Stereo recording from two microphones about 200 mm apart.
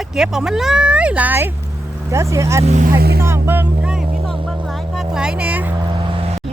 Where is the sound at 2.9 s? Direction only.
50° right (ahead or behind).